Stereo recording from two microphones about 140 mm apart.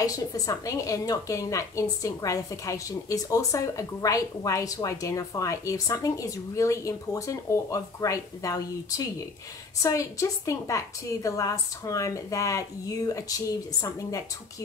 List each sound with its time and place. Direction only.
0.0 s a woman's voice: 25° left (ahead or behind)